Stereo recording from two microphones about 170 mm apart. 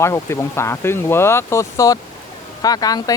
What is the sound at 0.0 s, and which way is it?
Speech, 15° left (ahead or behind).